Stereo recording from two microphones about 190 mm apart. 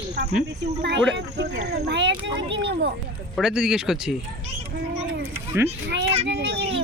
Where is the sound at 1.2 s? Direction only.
60° right (ahead or behind).